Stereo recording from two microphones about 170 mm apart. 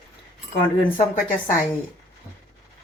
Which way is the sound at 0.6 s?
30° left (ahead or behind).